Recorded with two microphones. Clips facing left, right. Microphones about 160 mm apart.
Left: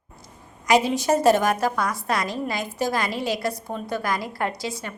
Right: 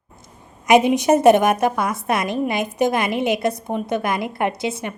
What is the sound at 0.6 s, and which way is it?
A woman's voice, 20° right (ahead or behind).